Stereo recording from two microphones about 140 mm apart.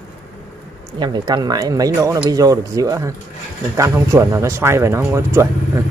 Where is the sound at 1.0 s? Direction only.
30° right (ahead or behind).